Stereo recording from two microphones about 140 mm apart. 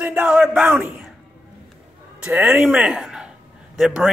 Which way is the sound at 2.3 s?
10° right (ahead or behind).